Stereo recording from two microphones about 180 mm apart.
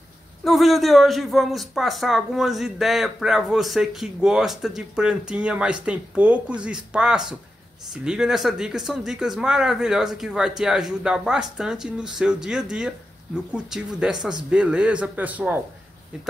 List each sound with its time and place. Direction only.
0.4 s a man's voice: centre (ahead or behind)